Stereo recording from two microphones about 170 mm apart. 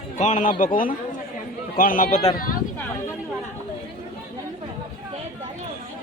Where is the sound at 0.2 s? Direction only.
45° left (ahead or behind).